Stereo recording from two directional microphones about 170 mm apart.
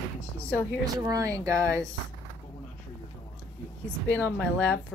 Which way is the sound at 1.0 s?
20° right (ahead or behind).